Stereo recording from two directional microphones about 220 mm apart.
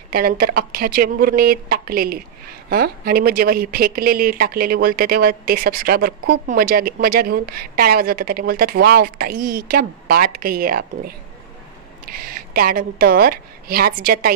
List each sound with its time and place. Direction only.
0.1 s speech: 40° right (ahead or behind)
12.1 s speech: 40° right (ahead or behind)